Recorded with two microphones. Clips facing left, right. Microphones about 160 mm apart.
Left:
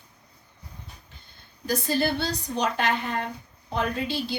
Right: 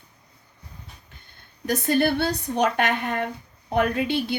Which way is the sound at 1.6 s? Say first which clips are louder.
Right 4 dB; 60° right (ahead or behind).